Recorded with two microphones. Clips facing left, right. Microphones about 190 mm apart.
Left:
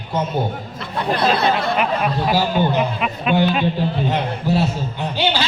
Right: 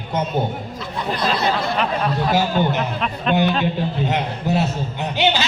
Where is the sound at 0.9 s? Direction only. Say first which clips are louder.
Left 4 dB; 60° left (ahead or behind).